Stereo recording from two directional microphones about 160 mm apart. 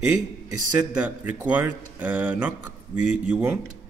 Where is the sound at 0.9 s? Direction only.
10° right (ahead or behind).